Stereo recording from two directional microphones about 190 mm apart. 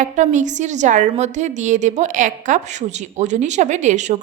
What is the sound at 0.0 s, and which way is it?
A woman's voice, 40° right (ahead or behind).